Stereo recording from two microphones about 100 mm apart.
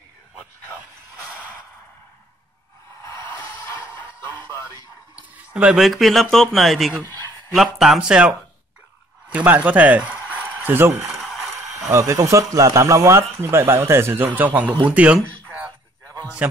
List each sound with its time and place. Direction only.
3.9 s music: 25° left (ahead or behind)
5.5 s speech: 10° right (ahead or behind)
5.9 s speech: centre (ahead or behind); by 10.1 s 15° right (ahead or behind)
10.2 s a sound: 20° left (ahead or behind)
10.6 s speech: 20° right (ahead or behind)
11.1 s a sound: centre (ahead or behind)
11.9 s speech: 30° right (ahead or behind); by 15.1 s 10° right (ahead or behind)